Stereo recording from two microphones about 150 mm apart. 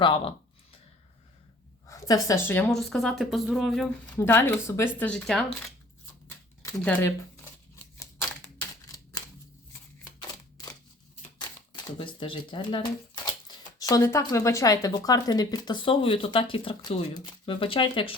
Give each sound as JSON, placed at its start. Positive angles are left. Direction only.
{"t": 0.0, "sound": "speech", "side_deg": 35}
{"t": 1.9, "sound": "a woman's voice", "side_deg": 25}
{"t": 2.7, "sound": "speech", "side_deg": 0}
{"t": 4.2, "sound": "speech", "side_deg": 15}
{"t": 6.2, "sound": "a sound", "side_deg": 20}
{"t": 6.8, "sound": "speech", "side_deg": 10}
{"t": 10.2, "sound": "a sound", "side_deg": 25}
{"t": 13.7, "sound": "speech", "side_deg": 25}